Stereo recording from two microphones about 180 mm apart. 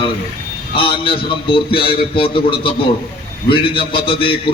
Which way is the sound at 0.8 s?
30° left (ahead or behind).